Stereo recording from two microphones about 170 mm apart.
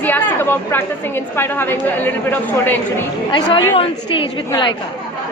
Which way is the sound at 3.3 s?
30° left (ahead or behind).